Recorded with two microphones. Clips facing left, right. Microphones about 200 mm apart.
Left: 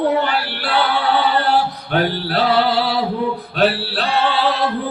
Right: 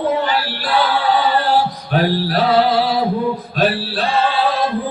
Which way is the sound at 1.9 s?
65° left (ahead or behind).